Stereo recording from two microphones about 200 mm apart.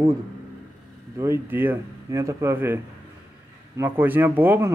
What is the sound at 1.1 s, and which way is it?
Speech, 15° right (ahead or behind).